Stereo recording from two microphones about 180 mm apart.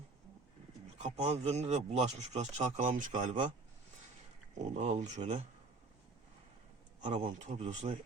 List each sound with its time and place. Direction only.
0.9 s speech: 40° right (ahead or behind)
4.5 s speech: 40° right (ahead or behind)
7.0 s speech: 40° right (ahead or behind)